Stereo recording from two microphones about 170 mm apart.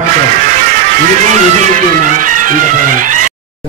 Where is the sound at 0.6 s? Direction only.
45° right (ahead or behind).